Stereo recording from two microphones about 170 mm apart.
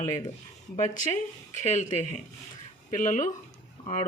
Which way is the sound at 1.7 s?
45° left (ahead or behind).